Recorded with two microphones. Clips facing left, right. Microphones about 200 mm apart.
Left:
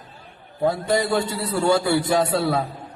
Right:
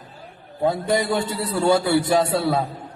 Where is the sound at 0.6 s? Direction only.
20° right (ahead or behind).